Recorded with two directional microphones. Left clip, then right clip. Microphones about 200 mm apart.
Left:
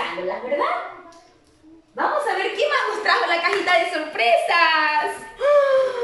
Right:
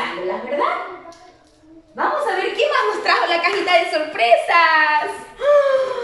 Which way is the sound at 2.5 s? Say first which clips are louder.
Right 3 dB; 5° right (ahead or behind).